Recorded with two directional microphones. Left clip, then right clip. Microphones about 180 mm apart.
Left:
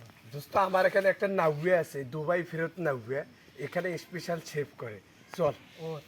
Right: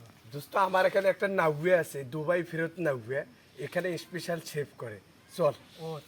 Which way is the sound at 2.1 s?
35° right (ahead or behind).